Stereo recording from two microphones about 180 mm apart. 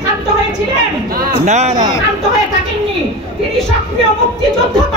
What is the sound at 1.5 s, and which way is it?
Speech, 40° right (ahead or behind).